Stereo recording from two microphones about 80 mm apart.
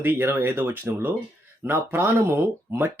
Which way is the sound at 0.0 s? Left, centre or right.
Right.